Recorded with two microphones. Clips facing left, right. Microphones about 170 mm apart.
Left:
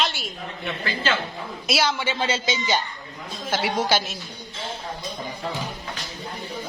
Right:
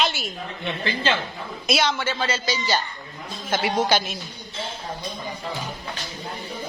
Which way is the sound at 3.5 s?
10° left (ahead or behind).